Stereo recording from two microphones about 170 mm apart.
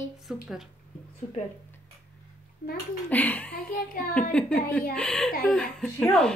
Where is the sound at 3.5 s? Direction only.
55° left (ahead or behind).